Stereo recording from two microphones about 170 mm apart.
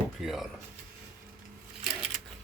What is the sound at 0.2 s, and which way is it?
Speech, centre (ahead or behind).